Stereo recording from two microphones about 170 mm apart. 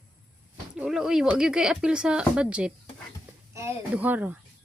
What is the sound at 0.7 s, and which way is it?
Speech, 5° right (ahead or behind).